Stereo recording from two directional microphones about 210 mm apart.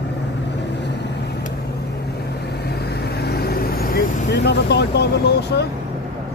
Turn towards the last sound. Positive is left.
turn(degrees=50)  # may be behind; listen again after turning